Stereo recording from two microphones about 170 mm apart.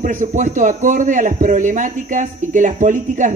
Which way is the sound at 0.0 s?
50° right (ahead or behind).